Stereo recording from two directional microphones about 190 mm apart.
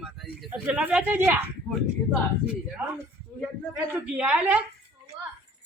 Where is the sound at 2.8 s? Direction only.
10° right (ahead or behind).